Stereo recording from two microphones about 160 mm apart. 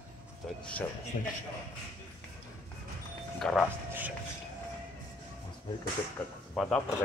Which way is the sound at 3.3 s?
5° left (ahead or behind).